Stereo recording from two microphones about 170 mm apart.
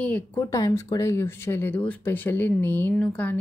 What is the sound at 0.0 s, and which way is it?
A woman's voice, 10° left (ahead or behind).